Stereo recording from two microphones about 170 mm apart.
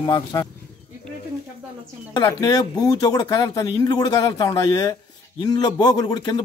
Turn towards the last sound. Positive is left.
turn(degrees=25)  # may be behind; listen again after turning